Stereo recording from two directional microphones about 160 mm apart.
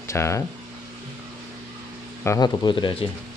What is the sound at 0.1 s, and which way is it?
Speech, 20° left (ahead or behind).